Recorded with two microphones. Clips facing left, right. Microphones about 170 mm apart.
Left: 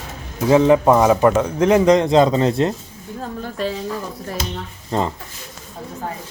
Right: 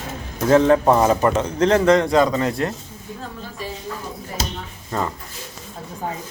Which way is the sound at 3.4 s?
70° left (ahead or behind).